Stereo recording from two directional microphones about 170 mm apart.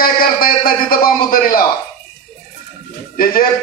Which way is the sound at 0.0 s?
60° left (ahead or behind).